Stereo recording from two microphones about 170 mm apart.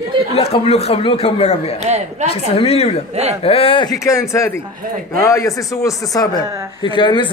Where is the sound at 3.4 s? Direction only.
35° left (ahead or behind); by 4.2 s 20° left (ahead or behind).